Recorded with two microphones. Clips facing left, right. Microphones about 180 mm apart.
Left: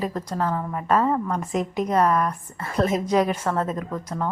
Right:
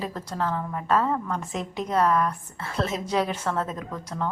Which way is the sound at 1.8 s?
10° left (ahead or behind).